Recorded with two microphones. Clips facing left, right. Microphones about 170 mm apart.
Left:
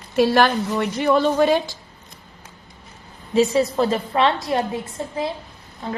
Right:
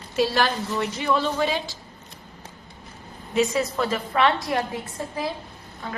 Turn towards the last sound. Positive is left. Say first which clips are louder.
# left 5 dB
turn(degrees=25)  # may be behind; listen again after turning